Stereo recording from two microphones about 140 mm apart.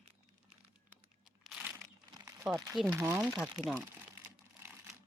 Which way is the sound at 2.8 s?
20° right (ahead or behind).